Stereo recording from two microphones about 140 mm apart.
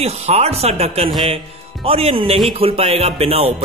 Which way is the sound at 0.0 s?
50° right (ahead or behind).